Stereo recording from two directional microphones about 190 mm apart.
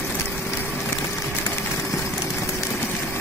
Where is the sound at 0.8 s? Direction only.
15° left (ahead or behind).